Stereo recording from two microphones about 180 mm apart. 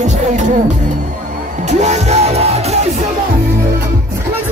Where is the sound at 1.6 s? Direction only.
40° right (ahead or behind).